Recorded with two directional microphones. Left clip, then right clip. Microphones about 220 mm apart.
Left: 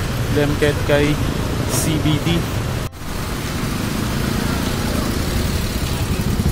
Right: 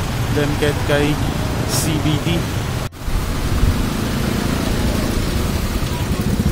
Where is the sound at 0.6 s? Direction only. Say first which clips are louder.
Left 1 dB; 10° left (ahead or behind).